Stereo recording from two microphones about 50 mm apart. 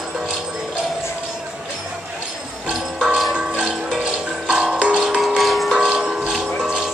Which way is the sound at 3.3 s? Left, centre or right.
Centre.